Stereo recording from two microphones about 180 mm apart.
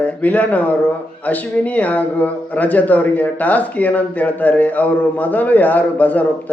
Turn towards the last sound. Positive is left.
turn(degrees=10)  # may be behind; listen again after turning